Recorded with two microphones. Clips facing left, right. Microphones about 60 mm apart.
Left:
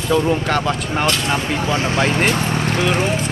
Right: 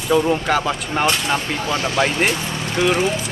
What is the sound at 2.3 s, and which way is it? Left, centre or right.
Vehicle, left.